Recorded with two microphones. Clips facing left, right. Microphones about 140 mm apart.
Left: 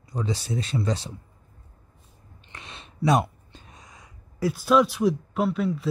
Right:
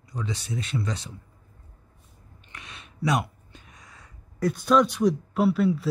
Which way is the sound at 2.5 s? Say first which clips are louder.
Left 2 dB; 30° left (ahead or behind).